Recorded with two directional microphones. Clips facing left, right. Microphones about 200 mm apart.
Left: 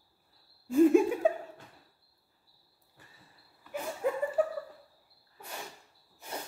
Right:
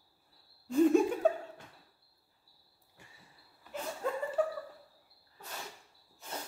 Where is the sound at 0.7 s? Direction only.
5° left (ahead or behind).